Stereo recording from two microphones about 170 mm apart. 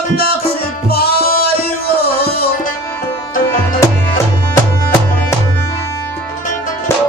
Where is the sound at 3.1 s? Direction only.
15° left (ahead or behind).